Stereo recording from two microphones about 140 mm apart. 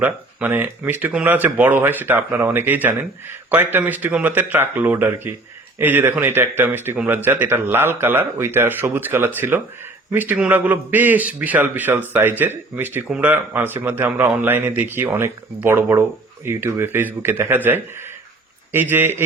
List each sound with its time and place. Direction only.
0.0 s speech: 10° right (ahead or behind)